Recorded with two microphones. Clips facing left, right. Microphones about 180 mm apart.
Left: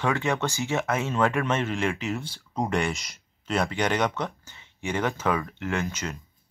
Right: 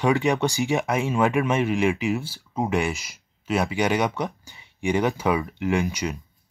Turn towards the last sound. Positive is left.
turn(degrees=-15)  # may be behind; listen again after turning